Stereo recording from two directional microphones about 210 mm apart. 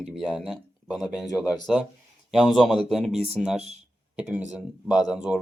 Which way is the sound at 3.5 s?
30° right (ahead or behind).